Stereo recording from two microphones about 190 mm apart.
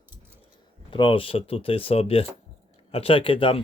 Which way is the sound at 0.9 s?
25° left (ahead or behind).